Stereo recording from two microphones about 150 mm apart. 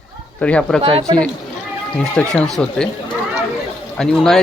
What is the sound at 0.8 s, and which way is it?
Speech, 35° right (ahead or behind).